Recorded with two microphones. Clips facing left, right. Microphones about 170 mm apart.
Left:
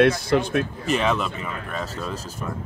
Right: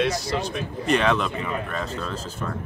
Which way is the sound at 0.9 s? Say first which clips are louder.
Right 4 dB; 5° left (ahead or behind).